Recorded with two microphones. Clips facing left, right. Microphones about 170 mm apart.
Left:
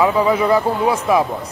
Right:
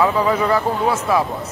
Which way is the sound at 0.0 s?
10° left (ahead or behind).